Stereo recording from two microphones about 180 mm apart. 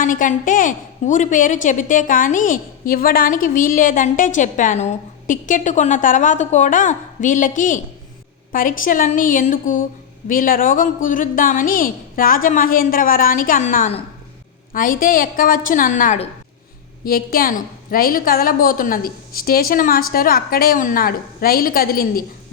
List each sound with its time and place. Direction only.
0.0 s a woman's voice: 45° left (ahead or behind)